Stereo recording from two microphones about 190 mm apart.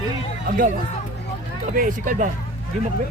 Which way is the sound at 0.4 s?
45° right (ahead or behind).